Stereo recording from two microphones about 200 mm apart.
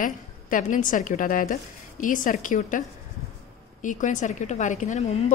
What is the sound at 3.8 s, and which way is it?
A woman's voice, 40° left (ahead or behind).